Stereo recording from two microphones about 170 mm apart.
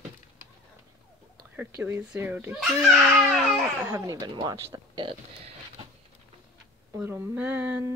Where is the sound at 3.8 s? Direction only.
20° right (ahead or behind).